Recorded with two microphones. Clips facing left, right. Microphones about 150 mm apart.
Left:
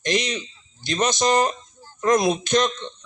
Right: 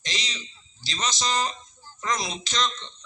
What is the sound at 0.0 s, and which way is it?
A man's voice, 55° left (ahead or behind).